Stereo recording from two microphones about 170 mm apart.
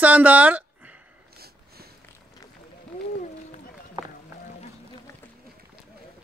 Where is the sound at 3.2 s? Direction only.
45° left (ahead or behind).